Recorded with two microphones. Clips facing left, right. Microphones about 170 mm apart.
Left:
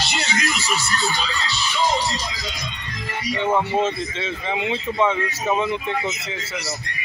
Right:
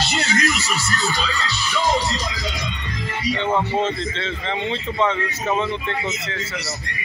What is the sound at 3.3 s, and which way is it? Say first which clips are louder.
A man's voice: left 2 dB; 10° left (ahead or behind).